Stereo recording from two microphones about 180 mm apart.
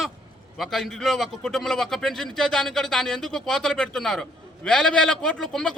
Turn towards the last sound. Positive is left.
turn(degrees=0)  # may be behind; listen again after turning